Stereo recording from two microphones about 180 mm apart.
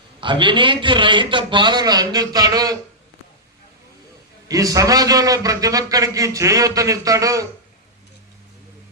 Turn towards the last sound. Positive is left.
turn(degrees=-20)  # may be behind; listen again after turning